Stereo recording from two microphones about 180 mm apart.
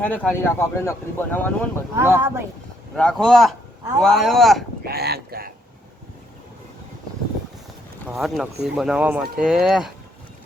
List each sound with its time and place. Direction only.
0.0 s speech: 10° left (ahead or behind)
2.0 s speech: 15° right (ahead or behind)
2.9 s speech: 5° left (ahead or behind)
4.9 s speech: 60° right (ahead or behind)
8.1 s speech: centre (ahead or behind)